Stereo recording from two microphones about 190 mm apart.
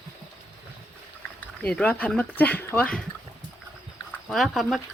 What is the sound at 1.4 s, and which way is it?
Speech, 5° left (ahead or behind).